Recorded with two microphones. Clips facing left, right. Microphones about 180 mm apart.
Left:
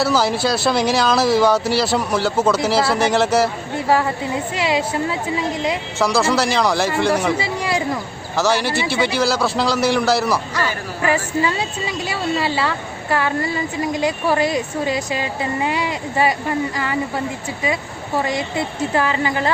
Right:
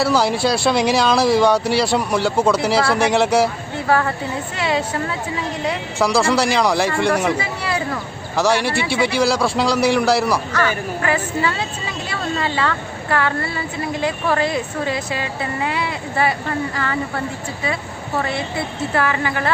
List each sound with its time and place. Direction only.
0.0 s speech: centre (ahead or behind)
3.8 s a woman's voice: 15° left (ahead or behind)
6.0 s speech: centre (ahead or behind)
7.6 s speech: 15° left (ahead or behind)
8.4 s speech: centre (ahead or behind)
10.5 s a woman's voice: 15° left (ahead or behind)